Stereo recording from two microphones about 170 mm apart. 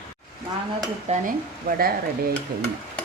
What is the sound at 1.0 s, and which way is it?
Speech, 50° right (ahead or behind).